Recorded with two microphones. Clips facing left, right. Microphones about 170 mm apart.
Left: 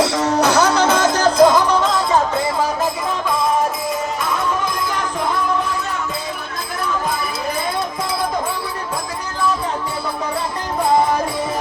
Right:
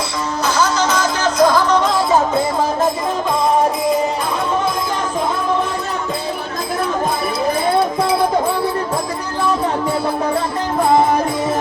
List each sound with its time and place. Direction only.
0.0 s music: 80° left; by 1.3 s 45° left (ahead or behind)
1.4 s music: 20° left (ahead or behind)
1.7 s music: centre (ahead or behind)